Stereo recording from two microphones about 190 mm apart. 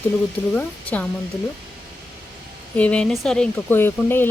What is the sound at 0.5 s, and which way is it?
Speech, 5° left (ahead or behind).